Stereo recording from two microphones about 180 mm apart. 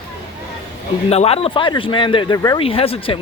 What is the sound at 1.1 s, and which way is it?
Speech, 35° left (ahead or behind).